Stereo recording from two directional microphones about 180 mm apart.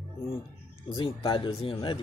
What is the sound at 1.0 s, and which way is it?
Speech, 30° left (ahead or behind).